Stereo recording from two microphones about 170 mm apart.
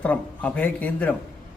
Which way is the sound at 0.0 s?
10° left (ahead or behind).